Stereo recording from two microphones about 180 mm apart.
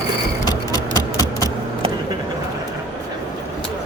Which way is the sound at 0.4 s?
20° left (ahead or behind).